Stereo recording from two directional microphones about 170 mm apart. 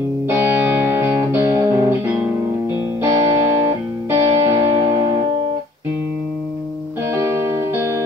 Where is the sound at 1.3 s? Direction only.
15° right (ahead or behind).